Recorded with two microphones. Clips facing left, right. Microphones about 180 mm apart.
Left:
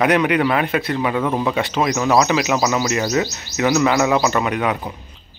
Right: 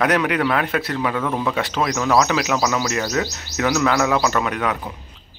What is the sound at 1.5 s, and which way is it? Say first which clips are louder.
Speech: left 2 dB; 5° left (ahead or behind).